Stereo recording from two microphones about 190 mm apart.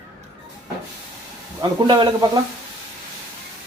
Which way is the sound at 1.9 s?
20° right (ahead or behind).